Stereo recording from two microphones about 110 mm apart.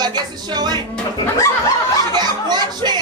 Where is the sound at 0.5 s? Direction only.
40° right (ahead or behind).